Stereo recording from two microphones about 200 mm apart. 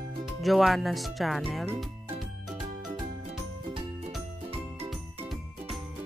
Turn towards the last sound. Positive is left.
turn(degrees=0)  # may be behind; listen again after turning